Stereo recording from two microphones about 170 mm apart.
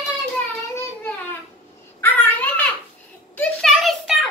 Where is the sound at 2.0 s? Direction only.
10° left (ahead or behind).